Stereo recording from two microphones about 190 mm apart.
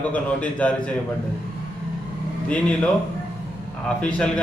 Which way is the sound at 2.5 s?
5° left (ahead or behind).